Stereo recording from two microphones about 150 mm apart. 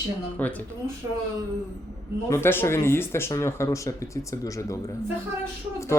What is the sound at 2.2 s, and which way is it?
Speech, 15° left (ahead or behind).